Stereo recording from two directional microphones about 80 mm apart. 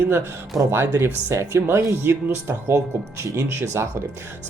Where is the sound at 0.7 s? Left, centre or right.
Right.